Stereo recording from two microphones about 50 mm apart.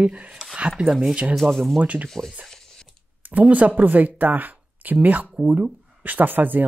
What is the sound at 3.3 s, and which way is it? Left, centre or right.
Speech, right.